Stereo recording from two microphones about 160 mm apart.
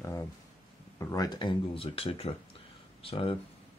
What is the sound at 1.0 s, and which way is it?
Speech, 20° left (ahead or behind).